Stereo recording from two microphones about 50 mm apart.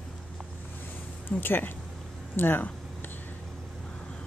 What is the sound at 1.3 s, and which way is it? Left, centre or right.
Speech, left.